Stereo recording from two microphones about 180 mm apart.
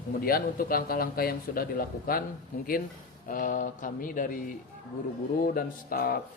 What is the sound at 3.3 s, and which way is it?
Speech, 45° left (ahead or behind).